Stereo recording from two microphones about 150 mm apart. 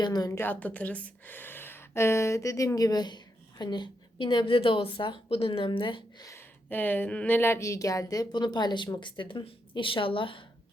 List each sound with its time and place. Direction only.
0.0 s speech: 25° left (ahead or behind)
6.2 s speech: 15° left (ahead or behind); by 10.4 s 35° left (ahead or behind)